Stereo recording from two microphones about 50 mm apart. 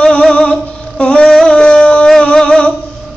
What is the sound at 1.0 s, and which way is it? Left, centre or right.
Speech, left.